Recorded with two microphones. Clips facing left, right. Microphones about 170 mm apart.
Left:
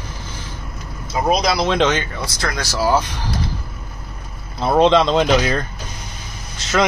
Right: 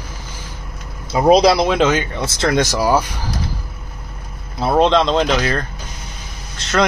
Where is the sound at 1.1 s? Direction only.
30° right (ahead or behind).